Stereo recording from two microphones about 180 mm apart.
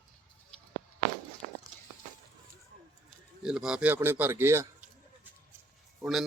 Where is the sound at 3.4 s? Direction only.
5° right (ahead or behind).